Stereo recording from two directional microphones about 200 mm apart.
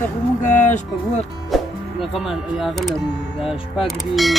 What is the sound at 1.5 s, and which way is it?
Speech, centre (ahead or behind).